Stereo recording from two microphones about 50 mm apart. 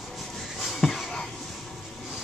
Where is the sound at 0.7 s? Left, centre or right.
Centre.